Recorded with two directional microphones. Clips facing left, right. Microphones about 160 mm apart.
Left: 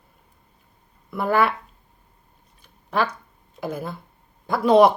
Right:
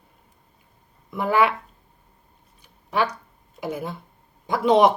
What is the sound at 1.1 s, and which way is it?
Speech, 15° right (ahead or behind).